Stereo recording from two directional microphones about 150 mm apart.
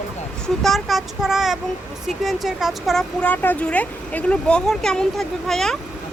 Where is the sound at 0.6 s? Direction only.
Centre (ahead or behind).